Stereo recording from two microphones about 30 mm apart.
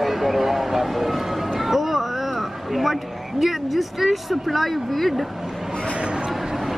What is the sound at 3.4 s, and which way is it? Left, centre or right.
Speech, centre.